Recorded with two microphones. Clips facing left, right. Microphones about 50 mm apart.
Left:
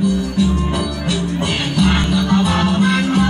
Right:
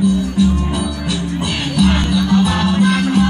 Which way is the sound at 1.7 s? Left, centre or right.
Left.